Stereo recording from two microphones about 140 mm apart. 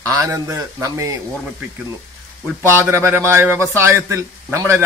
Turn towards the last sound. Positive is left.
turn(degrees=-20)  # may be behind; listen again after turning